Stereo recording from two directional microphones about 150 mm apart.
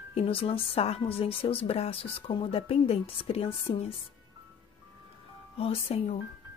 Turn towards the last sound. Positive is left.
turn(degrees=40)  # may be behind; listen again after turning